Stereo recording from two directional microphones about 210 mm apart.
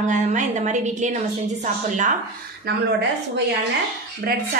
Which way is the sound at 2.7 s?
50° right (ahead or behind).